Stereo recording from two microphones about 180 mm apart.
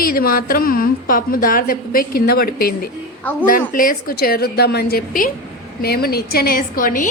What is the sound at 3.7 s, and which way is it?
A woman's voice, 50° left (ahead or behind).